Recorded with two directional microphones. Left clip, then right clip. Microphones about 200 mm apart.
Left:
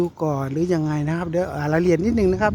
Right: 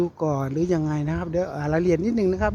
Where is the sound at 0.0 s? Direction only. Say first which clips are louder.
Left 1 dB; 5° left (ahead or behind).